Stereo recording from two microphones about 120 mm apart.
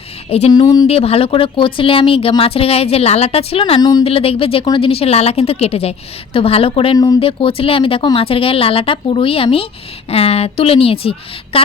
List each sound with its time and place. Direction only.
0.3 s a woman's voice: 60° left (ahead or behind)
0.5 s speech: 35° left (ahead or behind)
0.9 s a woman's voice: 55° left (ahead or behind)
3.8 s speech: 35° left (ahead or behind)
4.0 s a woman's voice: 55° left (ahead or behind)
6.9 s speech: 35° left (ahead or behind)
7.2 s speech: 50° left (ahead or behind)